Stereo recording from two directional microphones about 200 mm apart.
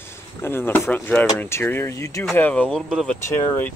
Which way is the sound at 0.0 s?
10° left (ahead or behind).